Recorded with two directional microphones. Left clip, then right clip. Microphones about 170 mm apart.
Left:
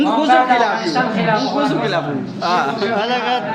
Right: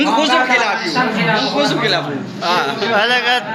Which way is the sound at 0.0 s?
30° left (ahead or behind).